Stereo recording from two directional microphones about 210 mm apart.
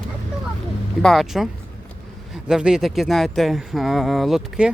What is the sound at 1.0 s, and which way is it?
Speech, centre (ahead or behind).